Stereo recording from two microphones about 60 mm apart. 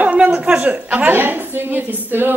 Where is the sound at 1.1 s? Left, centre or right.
Right.